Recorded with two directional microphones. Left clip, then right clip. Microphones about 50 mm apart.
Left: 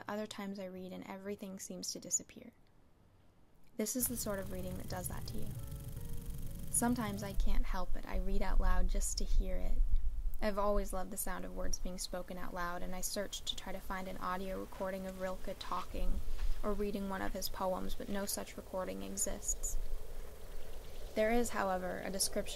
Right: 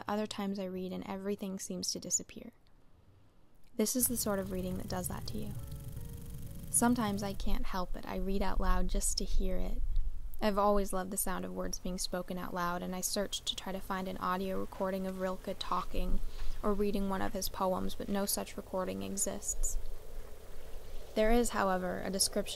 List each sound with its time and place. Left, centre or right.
0.0 s a woman's voice: right
3.7 s a woman's voice: right
4.3 s a woman's voice: centre
4.8 s a woman's voice: right
5.3 s music: centre
6.7 s a woman's voice: right
14.0 s a woman's voice: centre
15.4 s a woman's voice: right
16.6 s a woman's voice: centre; by 18.6 s right
18.8 s a woman's voice: centre
21.1 s speech: centre
21.4 s a woman's voice: right